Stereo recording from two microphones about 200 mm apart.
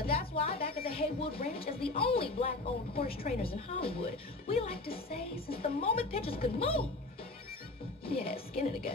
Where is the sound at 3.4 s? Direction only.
30° left (ahead or behind).